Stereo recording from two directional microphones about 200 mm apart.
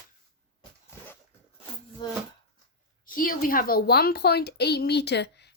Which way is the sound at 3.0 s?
45° left (ahead or behind).